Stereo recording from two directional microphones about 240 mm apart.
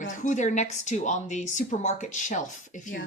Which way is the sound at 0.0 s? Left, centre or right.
Left.